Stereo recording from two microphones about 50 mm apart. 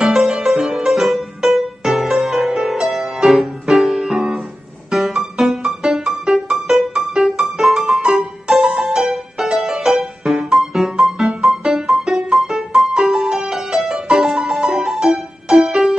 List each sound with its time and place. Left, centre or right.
0.0 s music: centre
8.0 s music: centre